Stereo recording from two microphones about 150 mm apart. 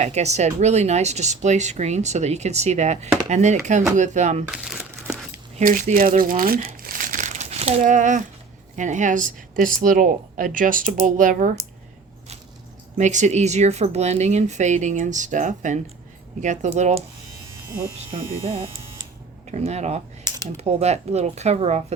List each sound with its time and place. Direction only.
0.0 s speech: 50° right (ahead or behind)
4.4 s speech: 5° right (ahead or behind)
5.5 s speech: 65° right (ahead or behind)
13.0 s speech: 50° right (ahead or behind)
18.1 s speech: 40° right (ahead or behind)
19.5 s speech: 45° right (ahead or behind)
20.2 s typing: 25° right (ahead or behind)
20.6 s speech: 45° right (ahead or behind)